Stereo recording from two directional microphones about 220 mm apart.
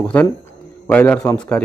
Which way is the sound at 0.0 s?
5° left (ahead or behind).